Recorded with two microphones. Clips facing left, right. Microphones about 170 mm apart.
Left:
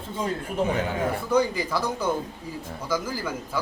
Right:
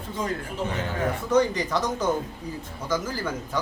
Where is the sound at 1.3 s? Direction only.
5° left (ahead or behind).